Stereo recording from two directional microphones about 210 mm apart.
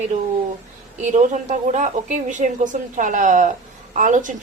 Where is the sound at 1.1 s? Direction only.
35° right (ahead or behind).